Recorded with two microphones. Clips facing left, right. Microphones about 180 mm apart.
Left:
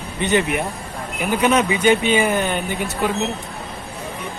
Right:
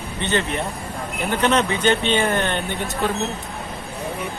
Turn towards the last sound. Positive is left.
turn(degrees=5)  # may be behind; listen again after turning